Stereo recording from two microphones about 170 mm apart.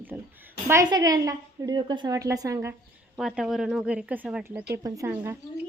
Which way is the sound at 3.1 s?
Centre (ahead or behind).